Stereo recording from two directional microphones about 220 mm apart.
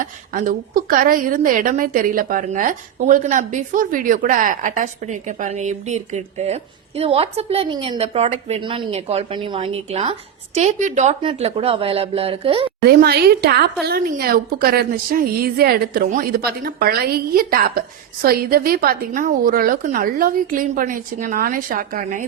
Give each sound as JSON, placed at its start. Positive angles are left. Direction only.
{"t": 0.0, "sound": "a woman's voice", "side_deg": -35}
{"t": 12.8, "sound": "a woman's voice", "side_deg": -45}